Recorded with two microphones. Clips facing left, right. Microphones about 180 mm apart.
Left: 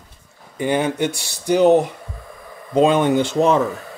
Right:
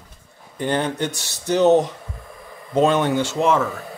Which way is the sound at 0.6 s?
10° left (ahead or behind).